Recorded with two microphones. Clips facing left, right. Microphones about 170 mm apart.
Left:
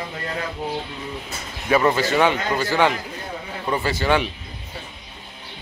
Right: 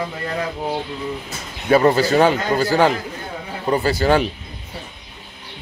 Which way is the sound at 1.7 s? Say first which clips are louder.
Right 4 dB; 35° right (ahead or behind).